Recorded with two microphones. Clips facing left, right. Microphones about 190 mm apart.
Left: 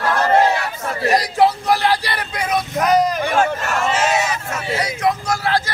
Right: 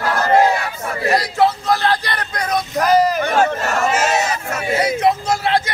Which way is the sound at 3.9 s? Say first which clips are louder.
Even; 45° right (ahead or behind).